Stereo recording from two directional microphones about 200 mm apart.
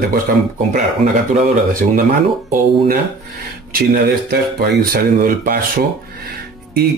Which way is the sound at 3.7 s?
50° right (ahead or behind).